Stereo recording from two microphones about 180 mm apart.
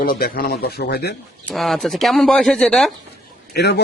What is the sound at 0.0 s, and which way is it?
Speech, 50° left (ahead or behind).